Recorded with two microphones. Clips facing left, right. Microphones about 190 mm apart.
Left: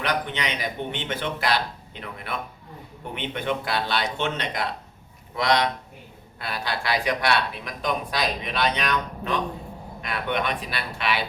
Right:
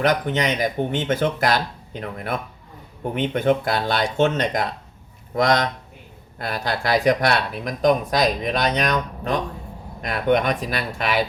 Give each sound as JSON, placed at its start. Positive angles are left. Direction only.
{"t": 0.0, "sound": "speech", "side_deg": -45}